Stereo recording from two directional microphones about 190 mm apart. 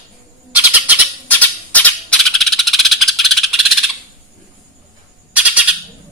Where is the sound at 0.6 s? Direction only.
10° right (ahead or behind).